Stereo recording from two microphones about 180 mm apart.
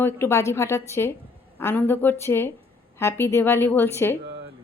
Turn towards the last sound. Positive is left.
turn(degrees=-75)  # may be behind; listen again after turning